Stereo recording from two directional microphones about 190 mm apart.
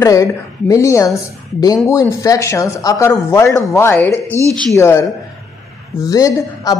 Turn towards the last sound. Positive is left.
turn(degrees=20)  # may be behind; listen again after turning